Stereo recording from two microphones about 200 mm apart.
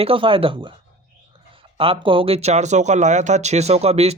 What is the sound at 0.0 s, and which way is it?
Speech, 25° right (ahead or behind).